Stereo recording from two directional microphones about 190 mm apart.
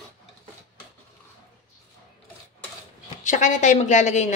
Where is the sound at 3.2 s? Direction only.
40° left (ahead or behind).